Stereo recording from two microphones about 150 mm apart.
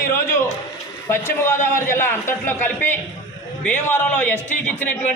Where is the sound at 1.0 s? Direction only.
15° left (ahead or behind).